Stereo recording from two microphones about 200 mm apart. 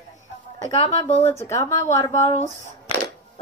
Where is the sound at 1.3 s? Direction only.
15° left (ahead or behind).